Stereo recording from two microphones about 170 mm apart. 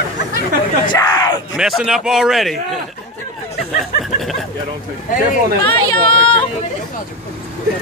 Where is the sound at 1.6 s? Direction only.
5° right (ahead or behind).